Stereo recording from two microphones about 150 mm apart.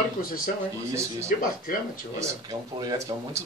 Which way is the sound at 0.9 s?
20° right (ahead or behind).